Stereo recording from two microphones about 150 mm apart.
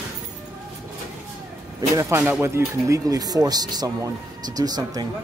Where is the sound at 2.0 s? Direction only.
15° right (ahead or behind).